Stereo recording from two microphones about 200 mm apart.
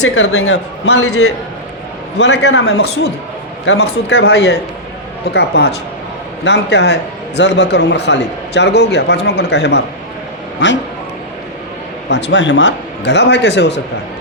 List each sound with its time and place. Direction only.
0.0 s a man's voice: 90° left
2.1 s a man's voice: 60° left (ahead or behind); by 4.2 s 90° left
4.4 s a man's voice: 55° left (ahead or behind)
12.0 s a man's voice: 60° left (ahead or behind)